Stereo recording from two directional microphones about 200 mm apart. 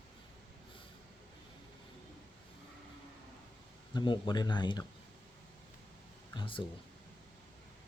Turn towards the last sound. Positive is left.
turn(degrees=25)  # may be behind; listen again after turning